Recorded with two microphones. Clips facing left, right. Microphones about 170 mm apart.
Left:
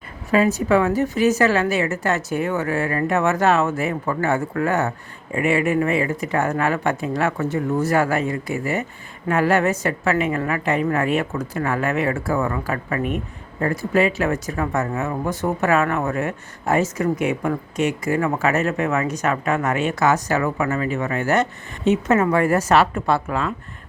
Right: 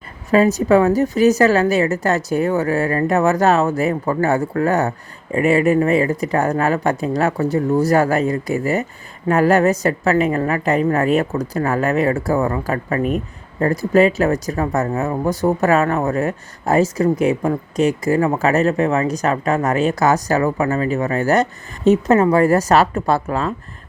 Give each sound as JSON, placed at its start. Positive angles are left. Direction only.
{"t": 0.3, "sound": "a woman's voice", "side_deg": -40}